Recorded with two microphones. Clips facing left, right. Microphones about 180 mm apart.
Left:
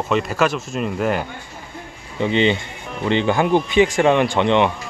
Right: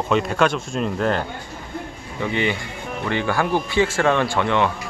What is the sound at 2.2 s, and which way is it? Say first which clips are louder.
Speech: left 5 dB; 20° left (ahead or behind).